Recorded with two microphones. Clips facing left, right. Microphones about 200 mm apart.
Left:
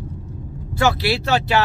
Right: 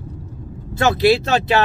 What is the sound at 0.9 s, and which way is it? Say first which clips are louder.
Speech: right 5 dB; 20° right (ahead or behind).